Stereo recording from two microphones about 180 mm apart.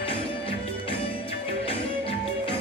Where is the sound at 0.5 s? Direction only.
30° left (ahead or behind).